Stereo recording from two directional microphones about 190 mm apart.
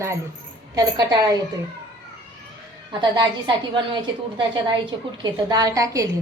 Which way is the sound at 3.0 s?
25° right (ahead or behind).